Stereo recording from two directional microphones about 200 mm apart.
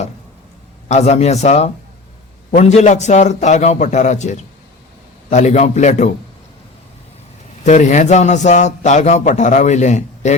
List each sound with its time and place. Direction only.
0.9 s a man's voice: 35° left (ahead or behind)
7.6 s a man's voice: 40° left (ahead or behind)